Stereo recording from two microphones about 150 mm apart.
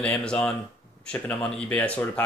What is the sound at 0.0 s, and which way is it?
Speech, 5° left (ahead or behind).